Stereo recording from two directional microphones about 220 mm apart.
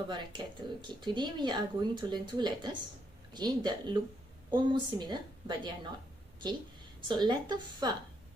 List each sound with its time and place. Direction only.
0.1 s speech: 20° right (ahead or behind)
7.1 s speech: 20° right (ahead or behind)